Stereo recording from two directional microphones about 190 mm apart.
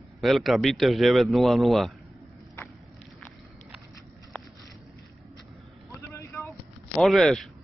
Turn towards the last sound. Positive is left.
turn(degrees=0)  # may be behind; listen again after turning